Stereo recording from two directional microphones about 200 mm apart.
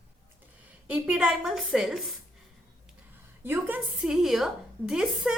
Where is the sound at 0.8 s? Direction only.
5° right (ahead or behind).